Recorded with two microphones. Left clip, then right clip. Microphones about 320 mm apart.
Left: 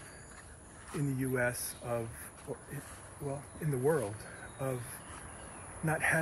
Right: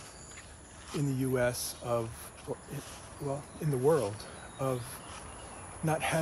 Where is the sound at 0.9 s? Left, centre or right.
Centre.